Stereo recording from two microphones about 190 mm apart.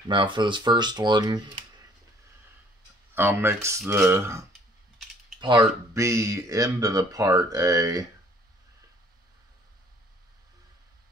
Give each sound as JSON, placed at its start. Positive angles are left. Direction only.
{"t": 0.1, "sound": "speech", "side_deg": -25}
{"t": 3.2, "sound": "speech", "side_deg": -10}